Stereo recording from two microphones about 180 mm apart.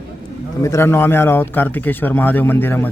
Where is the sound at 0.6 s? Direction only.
15° left (ahead or behind).